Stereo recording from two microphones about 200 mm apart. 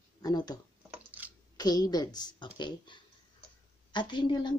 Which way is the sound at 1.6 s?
20° left (ahead or behind).